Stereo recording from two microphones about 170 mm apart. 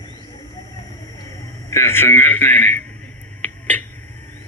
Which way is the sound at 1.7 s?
15° left (ahead or behind).